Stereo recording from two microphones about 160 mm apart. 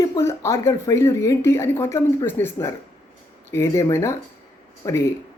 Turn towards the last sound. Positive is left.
turn(degrees=20)  # may be behind; listen again after turning